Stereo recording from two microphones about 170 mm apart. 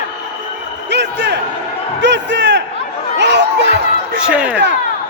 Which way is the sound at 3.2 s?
90° right.